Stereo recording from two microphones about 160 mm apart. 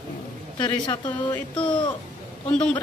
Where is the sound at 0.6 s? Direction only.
25° left (ahead or behind).